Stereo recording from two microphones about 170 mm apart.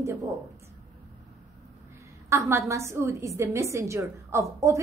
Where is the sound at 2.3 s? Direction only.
15° right (ahead or behind).